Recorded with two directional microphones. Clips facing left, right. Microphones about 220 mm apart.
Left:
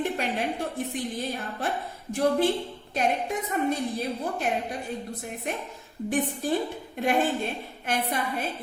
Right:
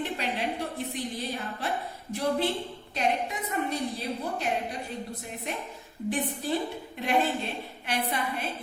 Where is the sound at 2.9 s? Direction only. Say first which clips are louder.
Left 2 dB; 50° left (ahead or behind).